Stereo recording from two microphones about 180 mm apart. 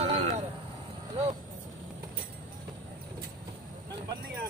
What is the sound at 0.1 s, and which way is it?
Vehicle, 40° right (ahead or behind).